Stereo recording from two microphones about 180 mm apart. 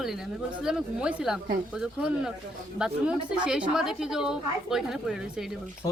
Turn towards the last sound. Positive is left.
turn(degrees=-5)  # may be behind; listen again after turning